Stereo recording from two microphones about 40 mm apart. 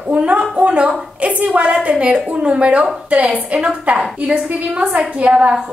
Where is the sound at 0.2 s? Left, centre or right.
Right.